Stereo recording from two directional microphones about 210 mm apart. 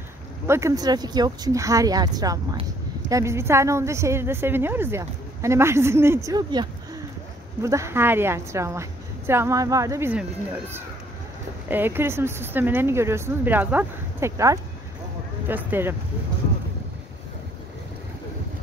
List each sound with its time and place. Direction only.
0.5 s a woman's voice: 15° right (ahead or behind)